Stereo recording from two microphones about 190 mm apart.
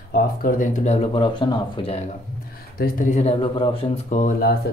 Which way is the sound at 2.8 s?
45° left (ahead or behind).